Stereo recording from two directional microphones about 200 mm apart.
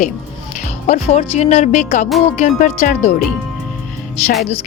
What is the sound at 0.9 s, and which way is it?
A woman's voice, 35° left (ahead or behind).